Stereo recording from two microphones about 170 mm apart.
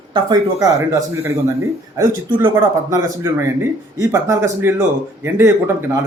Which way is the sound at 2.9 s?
20° right (ahead or behind).